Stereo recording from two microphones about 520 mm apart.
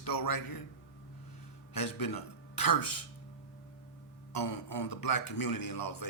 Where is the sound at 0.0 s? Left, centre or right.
Left.